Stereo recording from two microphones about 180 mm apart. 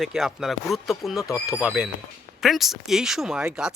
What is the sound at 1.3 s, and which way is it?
Speech, 15° left (ahead or behind).